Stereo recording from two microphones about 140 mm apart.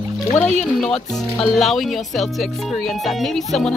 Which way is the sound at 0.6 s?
5° left (ahead or behind).